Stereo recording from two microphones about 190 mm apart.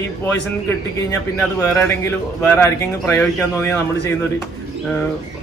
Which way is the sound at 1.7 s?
15° left (ahead or behind).